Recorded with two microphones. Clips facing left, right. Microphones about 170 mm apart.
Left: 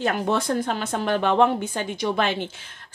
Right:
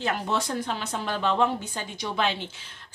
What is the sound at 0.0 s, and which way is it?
A woman's voice, 50° left (ahead or behind).